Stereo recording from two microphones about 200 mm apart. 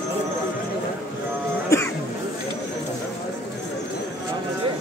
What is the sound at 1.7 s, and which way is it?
Cough, 15° left (ahead or behind).